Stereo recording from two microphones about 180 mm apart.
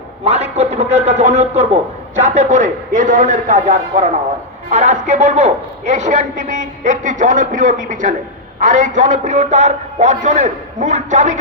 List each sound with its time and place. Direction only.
0.3 s a man's voice: 35° right (ahead or behind)